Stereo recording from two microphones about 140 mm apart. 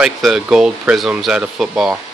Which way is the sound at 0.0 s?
5° right (ahead or behind).